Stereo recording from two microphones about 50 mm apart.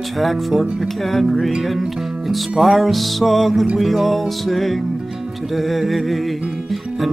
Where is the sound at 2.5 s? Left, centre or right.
Centre.